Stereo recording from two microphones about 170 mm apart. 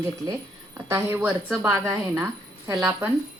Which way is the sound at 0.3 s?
15° right (ahead or behind).